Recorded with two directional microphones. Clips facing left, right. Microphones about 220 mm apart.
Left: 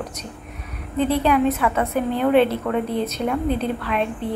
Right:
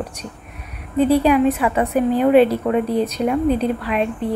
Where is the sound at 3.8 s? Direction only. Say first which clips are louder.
Right 3 dB; 5° right (ahead or behind).